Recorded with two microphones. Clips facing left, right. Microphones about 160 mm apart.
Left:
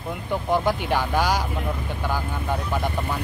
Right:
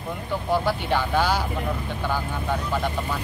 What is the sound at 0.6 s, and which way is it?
Speech, 10° left (ahead or behind).